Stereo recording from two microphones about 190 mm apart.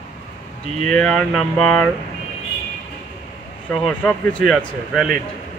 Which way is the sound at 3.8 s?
5° left (ahead or behind).